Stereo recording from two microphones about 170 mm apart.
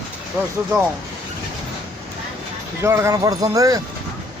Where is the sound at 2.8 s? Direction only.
15° right (ahead or behind).